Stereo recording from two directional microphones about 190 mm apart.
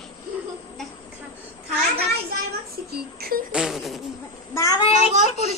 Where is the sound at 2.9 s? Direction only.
55° right (ahead or behind).